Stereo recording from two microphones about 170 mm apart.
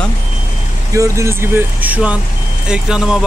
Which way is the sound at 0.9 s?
20° right (ahead or behind).